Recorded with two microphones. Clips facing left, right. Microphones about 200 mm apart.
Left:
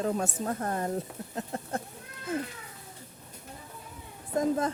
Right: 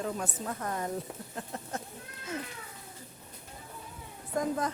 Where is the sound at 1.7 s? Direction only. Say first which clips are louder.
Left 4 dB; 55° left (ahead or behind).